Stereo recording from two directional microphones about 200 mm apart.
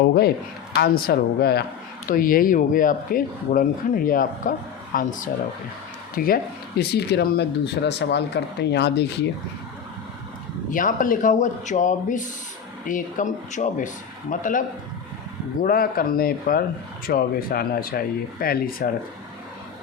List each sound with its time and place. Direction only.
0.8 s speech: 50° left (ahead or behind)
10.7 s speech: 40° left (ahead or behind)
15.6 s speech: 45° left (ahead or behind)